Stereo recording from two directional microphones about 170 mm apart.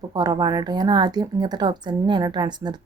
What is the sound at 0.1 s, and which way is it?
Speech, 20° right (ahead or behind).